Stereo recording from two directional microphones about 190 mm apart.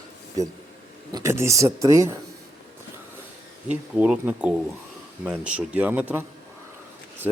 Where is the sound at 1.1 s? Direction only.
15° right (ahead or behind).